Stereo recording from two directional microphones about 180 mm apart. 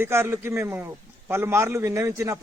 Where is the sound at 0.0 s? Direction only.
15° right (ahead or behind).